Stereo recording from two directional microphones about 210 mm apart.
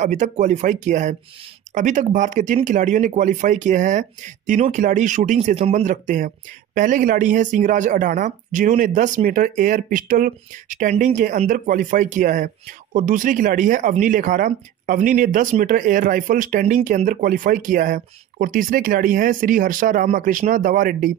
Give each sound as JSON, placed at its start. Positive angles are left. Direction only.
{"t": 0.0, "sound": "speech", "side_deg": -35}